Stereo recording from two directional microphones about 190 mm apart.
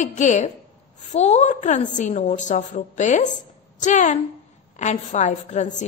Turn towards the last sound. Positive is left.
turn(degrees=40)  # may be behind; listen again after turning